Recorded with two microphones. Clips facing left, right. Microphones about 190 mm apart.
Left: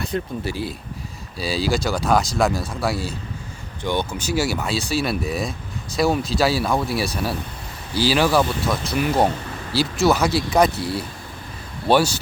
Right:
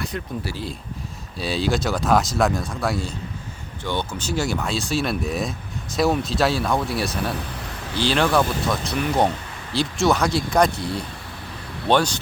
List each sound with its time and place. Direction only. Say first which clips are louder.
0.0 s speech: left 3 dB; 25° left (ahead or behind)
0.5 s speech: left 3 dB; 5° left (ahead or behind)